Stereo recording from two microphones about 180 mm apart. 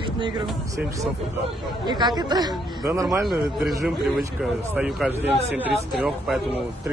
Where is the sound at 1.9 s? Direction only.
25° right (ahead or behind).